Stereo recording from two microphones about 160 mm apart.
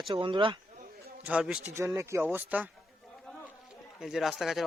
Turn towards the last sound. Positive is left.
turn(degrees=0)  # may be behind; listen again after turning